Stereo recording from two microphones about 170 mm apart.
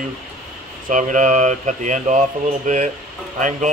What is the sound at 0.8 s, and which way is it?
Speech, 50° right (ahead or behind).